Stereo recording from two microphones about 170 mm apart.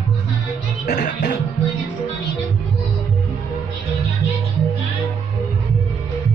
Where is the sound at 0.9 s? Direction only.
80° left.